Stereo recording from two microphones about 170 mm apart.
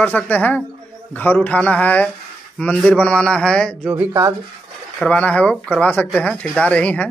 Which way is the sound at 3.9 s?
15° right (ahead or behind).